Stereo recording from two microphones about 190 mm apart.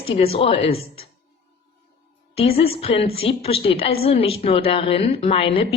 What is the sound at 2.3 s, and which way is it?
A woman's voice, 30° left (ahead or behind).